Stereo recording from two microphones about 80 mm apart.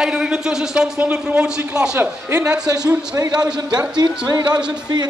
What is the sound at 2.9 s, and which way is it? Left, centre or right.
A man's voice, right.